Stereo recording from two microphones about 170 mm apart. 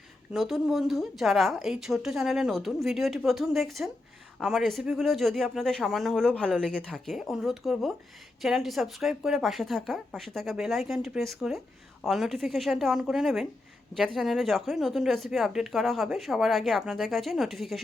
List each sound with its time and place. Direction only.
0.3 s speech: centre (ahead or behind)